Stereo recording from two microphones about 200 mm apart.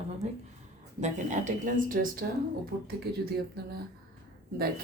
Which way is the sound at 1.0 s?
40° right (ahead or behind).